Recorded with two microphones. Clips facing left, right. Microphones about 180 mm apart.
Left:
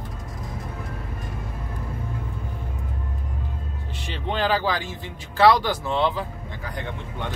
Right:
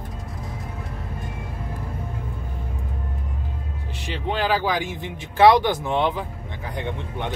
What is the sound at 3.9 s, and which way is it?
Speech, 10° right (ahead or behind).